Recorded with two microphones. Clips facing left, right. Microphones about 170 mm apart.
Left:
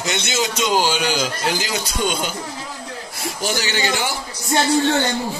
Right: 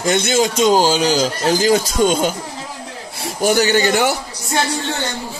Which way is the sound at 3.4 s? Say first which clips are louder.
Right 9 dB; 50° right (ahead or behind).